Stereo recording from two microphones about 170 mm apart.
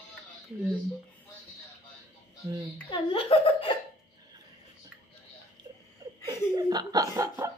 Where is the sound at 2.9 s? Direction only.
35° left (ahead or behind).